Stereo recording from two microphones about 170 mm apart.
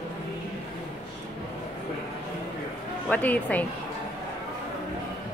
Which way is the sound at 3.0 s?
10° left (ahead or behind).